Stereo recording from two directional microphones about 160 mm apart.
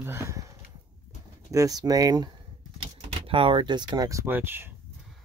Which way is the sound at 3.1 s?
35° right (ahead or behind).